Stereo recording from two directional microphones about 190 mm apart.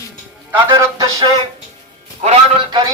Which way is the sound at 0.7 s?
20° right (ahead or behind).